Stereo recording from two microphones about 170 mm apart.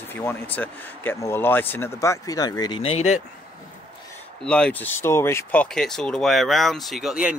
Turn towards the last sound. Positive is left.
turn(degrees=-5)  # may be behind; listen again after turning